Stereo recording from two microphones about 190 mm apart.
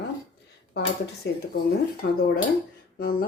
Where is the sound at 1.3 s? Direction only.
60° left (ahead or behind).